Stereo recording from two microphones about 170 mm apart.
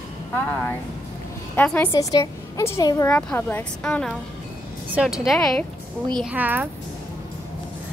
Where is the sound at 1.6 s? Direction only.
10° left (ahead or behind).